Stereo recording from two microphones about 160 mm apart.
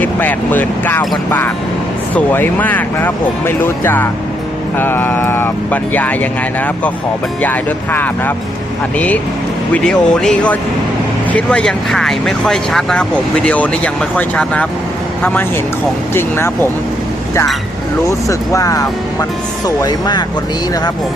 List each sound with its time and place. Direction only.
0.0 s speech: 10° left (ahead or behind)
2.1 s speech: 10° left (ahead or behind)
7.4 s speech: 10° left (ahead or behind)
18.3 s speech: 20° left (ahead or behind)